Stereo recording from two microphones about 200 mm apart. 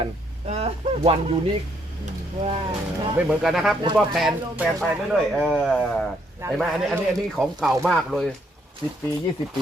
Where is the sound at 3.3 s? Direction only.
5° right (ahead or behind).